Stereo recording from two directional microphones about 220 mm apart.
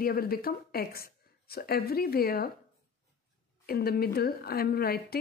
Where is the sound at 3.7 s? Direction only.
45° left (ahead or behind).